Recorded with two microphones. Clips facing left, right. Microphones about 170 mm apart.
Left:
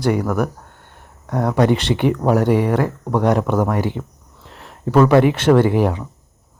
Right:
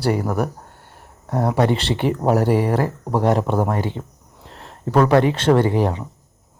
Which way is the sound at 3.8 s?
10° left (ahead or behind).